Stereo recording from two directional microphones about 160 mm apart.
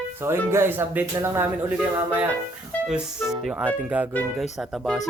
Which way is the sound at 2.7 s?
10° left (ahead or behind).